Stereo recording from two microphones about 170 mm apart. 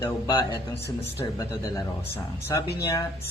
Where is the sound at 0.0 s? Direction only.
15° left (ahead or behind).